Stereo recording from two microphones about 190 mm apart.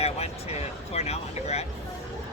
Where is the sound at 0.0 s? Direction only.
35° left (ahead or behind).